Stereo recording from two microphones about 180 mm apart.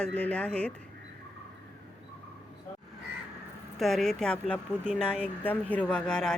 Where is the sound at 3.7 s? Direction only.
Centre (ahead or behind).